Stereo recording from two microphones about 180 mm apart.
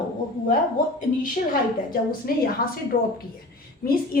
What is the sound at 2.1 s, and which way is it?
A woman's voice, 55° left (ahead or behind).